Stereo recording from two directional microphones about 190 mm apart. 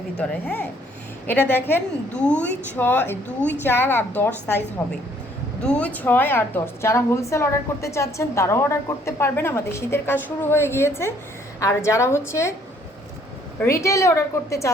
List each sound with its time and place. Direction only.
0.2 s a woman's voice: 5° left (ahead or behind)
5.6 s a woman's voice: 5° left (ahead or behind)
13.6 s a woman's voice: 15° left (ahead or behind)